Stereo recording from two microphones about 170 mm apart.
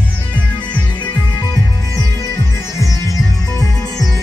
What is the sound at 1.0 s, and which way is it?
Music, 20° left (ahead or behind).